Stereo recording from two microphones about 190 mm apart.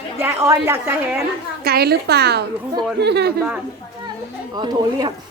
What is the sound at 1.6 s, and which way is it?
A woman's voice, 55° right (ahead or behind).